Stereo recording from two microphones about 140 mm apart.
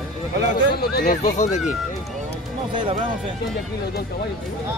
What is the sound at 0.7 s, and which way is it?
Speech, 75° left (ahead or behind).